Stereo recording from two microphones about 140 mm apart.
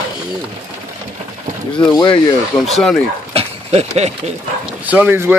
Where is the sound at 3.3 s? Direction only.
45° right (ahead or behind).